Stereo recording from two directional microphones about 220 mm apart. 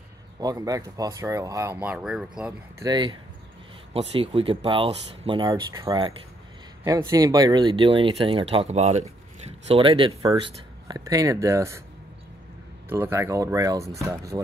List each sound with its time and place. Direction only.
0.4 s speech: 15° right (ahead or behind)
2.8 s speech: 20° right (ahead or behind)
12.9 s speech: 10° right (ahead or behind)